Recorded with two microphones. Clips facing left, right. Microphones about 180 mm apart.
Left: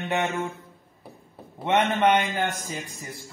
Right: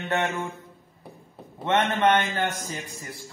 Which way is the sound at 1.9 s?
10° left (ahead or behind).